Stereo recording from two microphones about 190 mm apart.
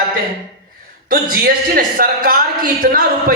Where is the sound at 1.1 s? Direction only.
50° right (ahead or behind).